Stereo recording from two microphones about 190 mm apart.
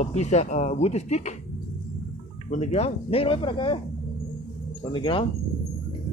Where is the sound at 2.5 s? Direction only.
35° left (ahead or behind).